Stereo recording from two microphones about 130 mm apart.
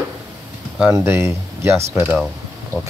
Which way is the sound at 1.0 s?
20° right (ahead or behind).